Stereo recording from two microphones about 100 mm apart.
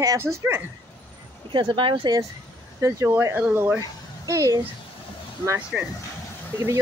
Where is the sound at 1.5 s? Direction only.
55° right (ahead or behind).